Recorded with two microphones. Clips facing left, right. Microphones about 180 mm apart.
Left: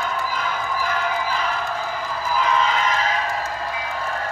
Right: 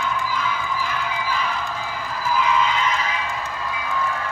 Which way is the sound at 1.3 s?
45° left (ahead or behind).